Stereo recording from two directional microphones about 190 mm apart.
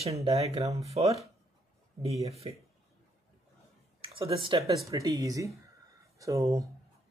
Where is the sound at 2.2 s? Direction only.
35° right (ahead or behind).